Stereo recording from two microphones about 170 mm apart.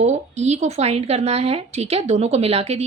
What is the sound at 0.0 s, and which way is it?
Speech, 40° right (ahead or behind).